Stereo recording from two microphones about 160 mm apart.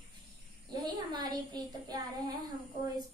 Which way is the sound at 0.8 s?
25° right (ahead or behind).